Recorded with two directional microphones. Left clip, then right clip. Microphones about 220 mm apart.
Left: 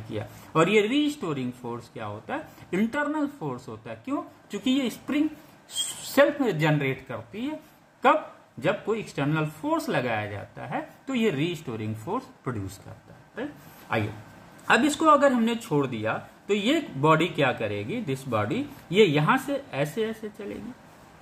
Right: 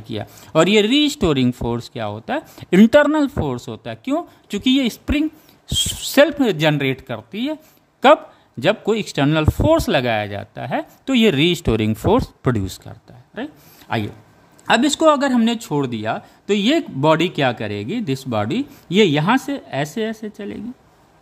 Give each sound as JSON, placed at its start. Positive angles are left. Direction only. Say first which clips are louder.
{"t": 0.1, "sound": "speech", "louder": "right 8 dB", "side_deg": -55}
{"t": 13.3, "sound": "a sound", "louder": "right 5 dB", "side_deg": -55}
{"t": 14.7, "sound": "speech", "louder": "right 5 dB", "side_deg": -50}